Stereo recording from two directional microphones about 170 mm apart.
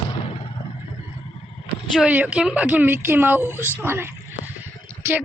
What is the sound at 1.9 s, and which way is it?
A woman's voice, 5° right (ahead or behind).